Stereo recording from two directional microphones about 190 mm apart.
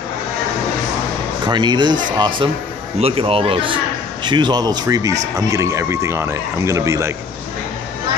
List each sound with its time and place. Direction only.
1.5 s a man's voice: 20° right (ahead or behind)